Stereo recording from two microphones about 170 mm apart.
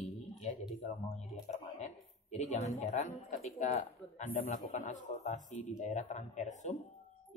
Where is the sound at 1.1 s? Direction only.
40° left (ahead or behind).